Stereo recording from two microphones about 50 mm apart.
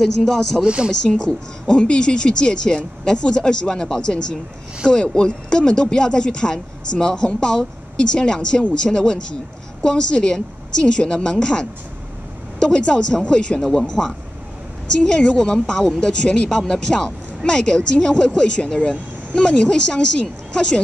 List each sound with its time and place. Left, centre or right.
0.0 s speech: centre
13.6 s speech: centre